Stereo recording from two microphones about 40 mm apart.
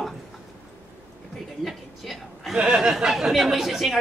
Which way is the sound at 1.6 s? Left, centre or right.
Centre.